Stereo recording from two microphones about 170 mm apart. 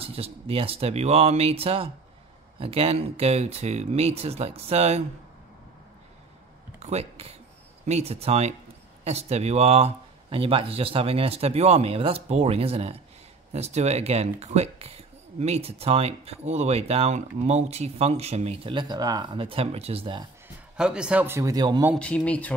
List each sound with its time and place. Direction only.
0.0 s speech: 35° right (ahead or behind)
6.8 s speech: 40° right (ahead or behind)
20.4 s a man's voice: 5° right (ahead or behind); by 21.8 s 25° right (ahead or behind)
21.9 s speech: 5° left (ahead or behind)